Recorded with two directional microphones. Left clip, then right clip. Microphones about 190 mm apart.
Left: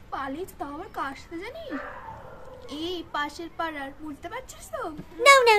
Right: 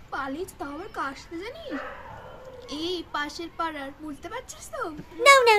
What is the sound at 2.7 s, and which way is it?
A woman's voice, 5° left (ahead or behind).